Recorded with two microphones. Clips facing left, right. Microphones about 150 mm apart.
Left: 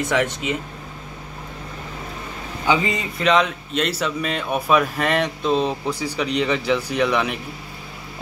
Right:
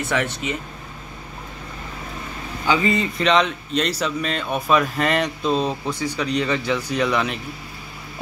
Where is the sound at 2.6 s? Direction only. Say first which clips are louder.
Right 1 dB; 20° left (ahead or behind).